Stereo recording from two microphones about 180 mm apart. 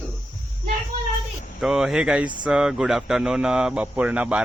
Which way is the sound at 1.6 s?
5° right (ahead or behind).